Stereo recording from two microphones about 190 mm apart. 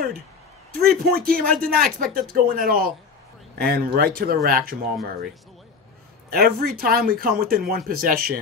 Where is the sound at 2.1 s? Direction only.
45° right (ahead or behind).